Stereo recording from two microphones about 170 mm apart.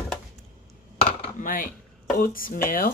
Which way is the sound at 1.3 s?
55° left (ahead or behind).